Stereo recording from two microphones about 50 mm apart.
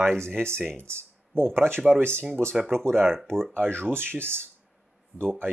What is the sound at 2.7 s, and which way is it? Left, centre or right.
Speech, centre.